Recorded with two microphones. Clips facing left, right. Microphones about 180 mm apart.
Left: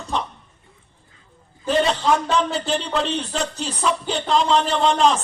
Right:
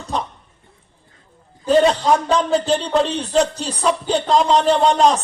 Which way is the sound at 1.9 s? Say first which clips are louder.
Right 3 dB; 35° right (ahead or behind).